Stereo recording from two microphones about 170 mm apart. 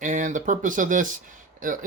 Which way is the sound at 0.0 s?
50° right (ahead or behind).